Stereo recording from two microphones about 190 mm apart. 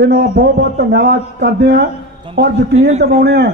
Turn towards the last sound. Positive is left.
turn(degrees=-60)  # may be behind; listen again after turning